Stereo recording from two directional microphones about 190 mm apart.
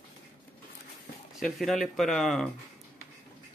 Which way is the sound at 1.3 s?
Centre (ahead or behind).